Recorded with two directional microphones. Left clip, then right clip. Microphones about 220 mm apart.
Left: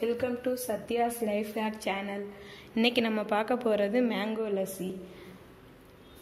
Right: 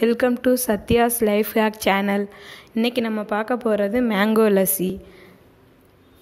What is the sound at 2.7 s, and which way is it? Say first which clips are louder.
Speech: right 5 dB; 30° right (ahead or behind).